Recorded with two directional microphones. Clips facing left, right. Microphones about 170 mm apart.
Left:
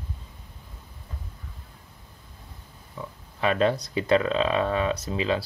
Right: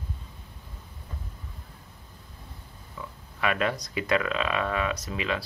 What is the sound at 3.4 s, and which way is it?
Speech, 30° left (ahead or behind).